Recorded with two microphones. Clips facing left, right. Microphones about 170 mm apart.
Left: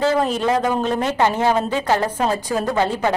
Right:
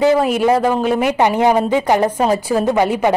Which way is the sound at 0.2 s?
10° right (ahead or behind).